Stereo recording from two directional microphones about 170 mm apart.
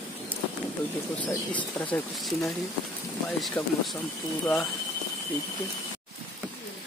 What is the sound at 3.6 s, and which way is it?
Speech, 20° left (ahead or behind).